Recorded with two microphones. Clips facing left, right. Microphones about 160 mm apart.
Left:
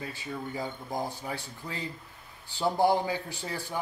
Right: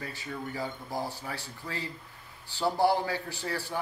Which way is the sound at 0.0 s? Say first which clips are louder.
Left 1 dB; 15° left (ahead or behind).